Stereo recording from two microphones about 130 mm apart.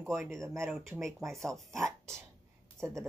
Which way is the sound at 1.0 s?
Centre (ahead or behind).